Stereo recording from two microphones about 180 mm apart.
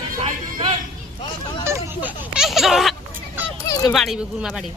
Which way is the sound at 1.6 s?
10° right (ahead or behind).